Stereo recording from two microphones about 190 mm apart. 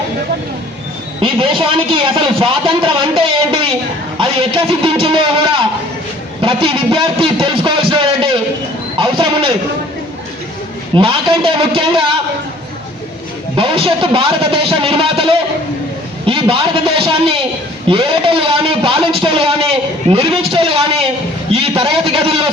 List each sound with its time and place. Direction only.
1.2 s a man's voice: 25° right (ahead or behind)
9.0 s a sound: 30° right (ahead or behind)
10.9 s a man's voice: 30° right (ahead or behind)
13.6 s a man's voice: 30° right (ahead or behind)